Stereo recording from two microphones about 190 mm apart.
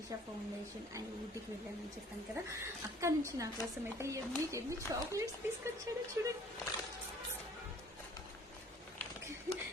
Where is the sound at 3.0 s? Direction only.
15° right (ahead or behind).